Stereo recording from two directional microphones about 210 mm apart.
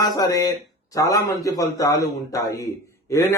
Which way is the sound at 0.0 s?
15° left (ahead or behind).